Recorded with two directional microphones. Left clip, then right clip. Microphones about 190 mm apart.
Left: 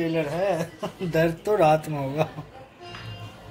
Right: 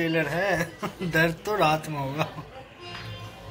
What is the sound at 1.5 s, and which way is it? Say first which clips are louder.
Speech: left 4 dB; 50° left (ahead or behind).